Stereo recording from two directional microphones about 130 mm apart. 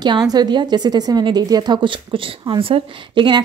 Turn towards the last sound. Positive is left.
turn(degrees=-35)  # may be behind; listen again after turning